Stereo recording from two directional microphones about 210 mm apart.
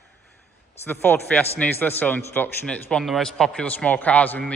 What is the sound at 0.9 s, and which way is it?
A man's voice, 10° left (ahead or behind).